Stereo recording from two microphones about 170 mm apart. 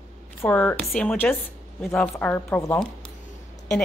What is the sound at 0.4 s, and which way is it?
Speech, 10° left (ahead or behind).